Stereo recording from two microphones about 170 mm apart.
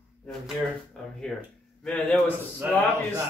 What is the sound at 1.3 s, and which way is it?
A man's voice, 5° left (ahead or behind).